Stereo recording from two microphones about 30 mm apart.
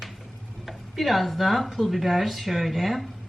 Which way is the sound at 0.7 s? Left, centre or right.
Centre.